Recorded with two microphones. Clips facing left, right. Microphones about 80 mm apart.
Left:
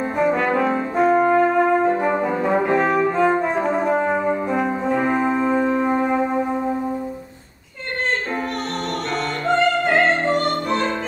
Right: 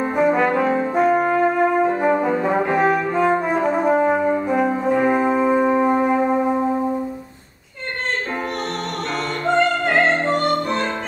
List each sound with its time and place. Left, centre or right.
0.2 s brass instrument: centre
9.5 s opera: centre